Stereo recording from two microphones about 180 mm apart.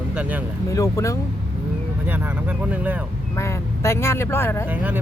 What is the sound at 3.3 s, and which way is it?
Speech, 15° left (ahead or behind).